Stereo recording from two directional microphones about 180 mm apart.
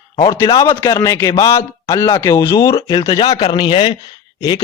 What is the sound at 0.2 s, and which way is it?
A man's voice, 20° left (ahead or behind).